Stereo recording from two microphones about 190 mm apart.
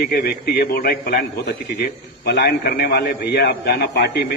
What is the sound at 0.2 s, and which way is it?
Speech, 55° left (ahead or behind).